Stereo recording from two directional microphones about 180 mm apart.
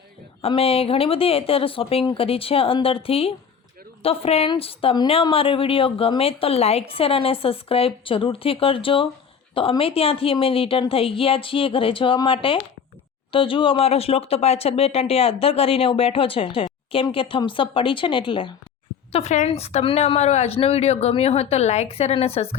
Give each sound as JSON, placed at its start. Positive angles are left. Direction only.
{"t": 0.4, "sound": "speech", "side_deg": 30}
{"t": 19.1, "sound": "speech", "side_deg": 40}